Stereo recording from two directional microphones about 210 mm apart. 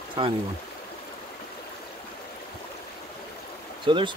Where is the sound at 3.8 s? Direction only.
20° right (ahead or behind).